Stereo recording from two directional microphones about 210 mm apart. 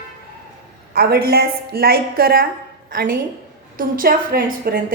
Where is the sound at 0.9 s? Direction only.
45° right (ahead or behind).